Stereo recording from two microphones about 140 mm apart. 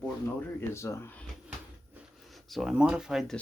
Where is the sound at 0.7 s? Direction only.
20° left (ahead or behind).